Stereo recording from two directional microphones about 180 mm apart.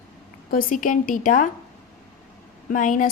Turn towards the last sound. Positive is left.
turn(degrees=45)  # may be behind; listen again after turning